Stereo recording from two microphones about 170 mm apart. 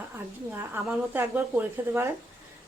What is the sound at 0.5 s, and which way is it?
A woman's voice, 15° right (ahead or behind).